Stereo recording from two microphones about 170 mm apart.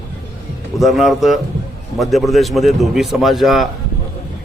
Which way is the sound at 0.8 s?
Centre (ahead or behind).